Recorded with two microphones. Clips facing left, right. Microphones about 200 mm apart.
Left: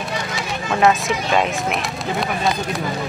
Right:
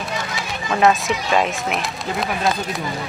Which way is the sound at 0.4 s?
Centre (ahead or behind).